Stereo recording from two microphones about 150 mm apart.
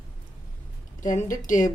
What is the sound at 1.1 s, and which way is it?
Speech, 60° left (ahead or behind).